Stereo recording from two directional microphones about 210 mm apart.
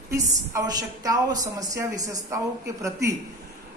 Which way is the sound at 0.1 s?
15° right (ahead or behind).